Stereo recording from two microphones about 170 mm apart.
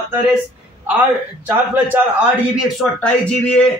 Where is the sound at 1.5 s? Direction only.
10° right (ahead or behind).